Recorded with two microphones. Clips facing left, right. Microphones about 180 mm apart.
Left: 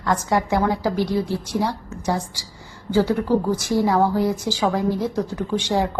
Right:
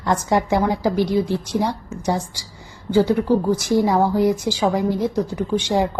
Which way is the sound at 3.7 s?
20° right (ahead or behind).